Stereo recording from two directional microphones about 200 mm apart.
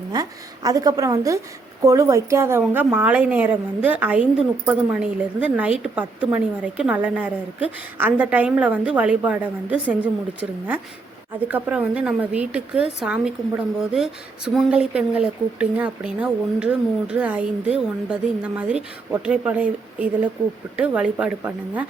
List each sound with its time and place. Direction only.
0.1 s a woman's voice: 20° right (ahead or behind)
11.4 s speech: 10° right (ahead or behind)